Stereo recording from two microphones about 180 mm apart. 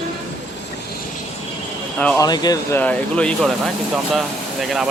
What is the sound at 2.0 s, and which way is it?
Speech, 5° left (ahead or behind).